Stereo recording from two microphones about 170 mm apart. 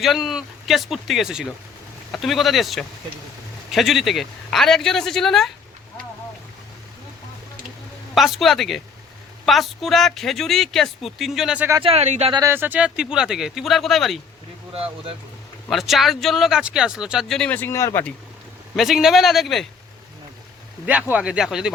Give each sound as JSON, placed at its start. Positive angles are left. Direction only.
{"t": 0.0, "sound": "speech", "side_deg": 0}
{"t": 8.1, "sound": "speech", "side_deg": 0}
{"t": 11.8, "sound": "speech", "side_deg": -35}
{"t": 12.3, "sound": "speech", "side_deg": -15}
{"t": 14.7, "sound": "speech", "side_deg": -35}
{"t": 15.7, "sound": "speech", "side_deg": 0}
{"t": 18.8, "sound": "speech", "side_deg": 0}
{"t": 20.8, "sound": "speech", "side_deg": -10}